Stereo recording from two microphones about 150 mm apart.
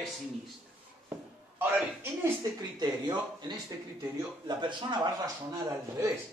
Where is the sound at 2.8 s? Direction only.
25° right (ahead or behind).